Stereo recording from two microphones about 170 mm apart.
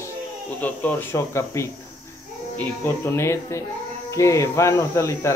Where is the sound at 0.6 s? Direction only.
10° left (ahead or behind).